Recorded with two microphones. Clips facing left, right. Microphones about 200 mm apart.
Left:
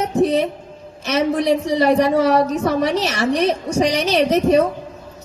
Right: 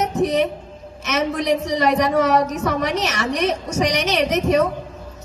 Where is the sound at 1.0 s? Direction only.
30° left (ahead or behind).